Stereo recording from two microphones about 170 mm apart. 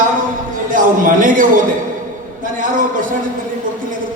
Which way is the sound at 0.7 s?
50° right (ahead or behind).